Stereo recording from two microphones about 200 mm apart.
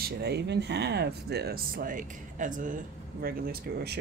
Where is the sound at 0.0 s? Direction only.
55° right (ahead or behind).